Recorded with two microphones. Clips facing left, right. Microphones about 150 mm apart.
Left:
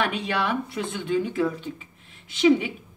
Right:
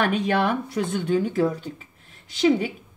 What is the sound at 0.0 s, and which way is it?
Speech, 45° right (ahead or behind).